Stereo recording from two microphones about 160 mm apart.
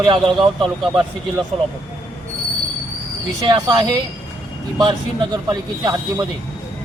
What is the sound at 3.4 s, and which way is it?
Speech, 25° right (ahead or behind).